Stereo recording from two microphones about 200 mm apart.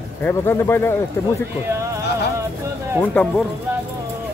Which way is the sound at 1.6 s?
15° right (ahead or behind).